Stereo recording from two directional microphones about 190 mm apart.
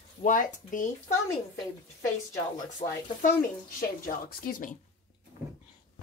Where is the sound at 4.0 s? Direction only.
45° left (ahead or behind).